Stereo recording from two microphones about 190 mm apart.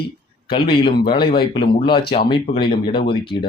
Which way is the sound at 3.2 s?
55° left (ahead or behind).